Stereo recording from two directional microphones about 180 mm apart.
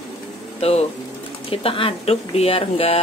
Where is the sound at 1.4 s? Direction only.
30° left (ahead or behind).